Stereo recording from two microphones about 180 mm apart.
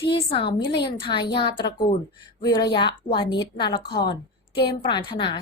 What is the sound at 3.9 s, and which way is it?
Speech, 65° left (ahead or behind).